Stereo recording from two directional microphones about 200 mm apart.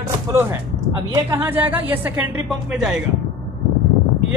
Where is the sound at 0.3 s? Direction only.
10° right (ahead or behind).